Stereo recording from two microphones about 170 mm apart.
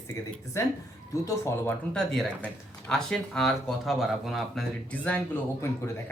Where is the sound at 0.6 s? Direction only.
15° left (ahead or behind).